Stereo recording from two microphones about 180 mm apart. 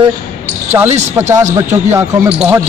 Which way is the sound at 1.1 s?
15° right (ahead or behind).